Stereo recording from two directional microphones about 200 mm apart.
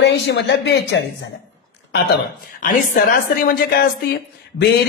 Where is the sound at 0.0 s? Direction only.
60° left (ahead or behind).